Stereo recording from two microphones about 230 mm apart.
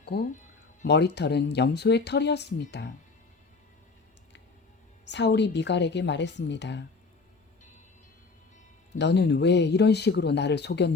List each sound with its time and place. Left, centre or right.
0.0 s speech: left
5.0 s speech: left
9.0 s speech: left